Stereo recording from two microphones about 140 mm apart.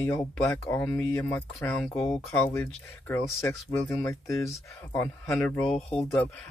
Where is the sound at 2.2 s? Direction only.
15° left (ahead or behind).